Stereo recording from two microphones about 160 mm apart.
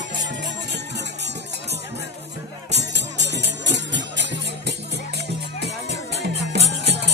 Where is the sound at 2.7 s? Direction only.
90° right.